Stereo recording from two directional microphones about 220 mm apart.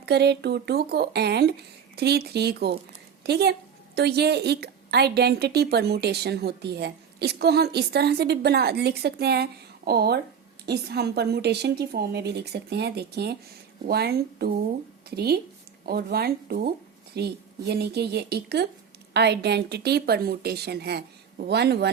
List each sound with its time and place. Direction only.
0.0 s a woman's voice: 50° right (ahead or behind)